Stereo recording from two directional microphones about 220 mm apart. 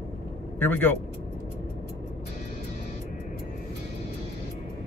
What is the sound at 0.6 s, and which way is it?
Speech, 10° left (ahead or behind).